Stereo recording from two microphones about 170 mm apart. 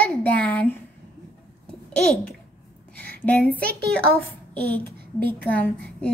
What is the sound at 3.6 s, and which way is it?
Speech, 65° right (ahead or behind).